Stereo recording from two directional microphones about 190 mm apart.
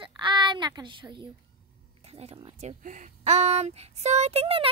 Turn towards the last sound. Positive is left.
turn(degrees=-30)  # may be behind; listen again after turning